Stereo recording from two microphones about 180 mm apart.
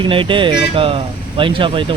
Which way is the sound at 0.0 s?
30° right (ahead or behind).